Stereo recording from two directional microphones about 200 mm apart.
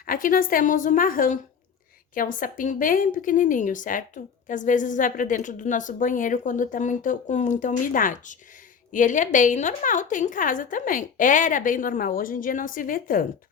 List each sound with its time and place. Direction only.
0.0 s a woman's voice: 45° left (ahead or behind)